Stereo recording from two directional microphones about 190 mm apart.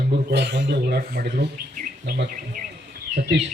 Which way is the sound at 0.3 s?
65° right (ahead or behind).